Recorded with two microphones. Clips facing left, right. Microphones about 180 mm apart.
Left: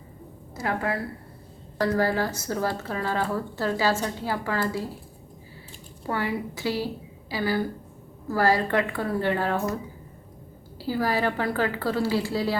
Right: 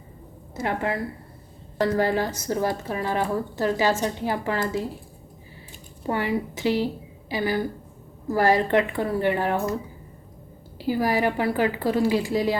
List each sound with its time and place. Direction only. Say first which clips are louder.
0.5 s a woman's voice: right 1 dB; 20° right (ahead or behind)
6.0 s a woman's voice: right 3 dB; 15° right (ahead or behind)
10.8 s speech: right 3 dB; 15° right (ahead or behind)